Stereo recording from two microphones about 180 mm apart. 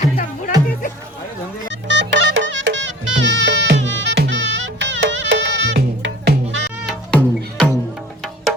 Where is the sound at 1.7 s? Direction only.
80° right.